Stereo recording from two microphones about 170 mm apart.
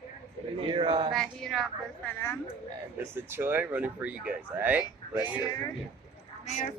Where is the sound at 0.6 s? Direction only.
30° right (ahead or behind).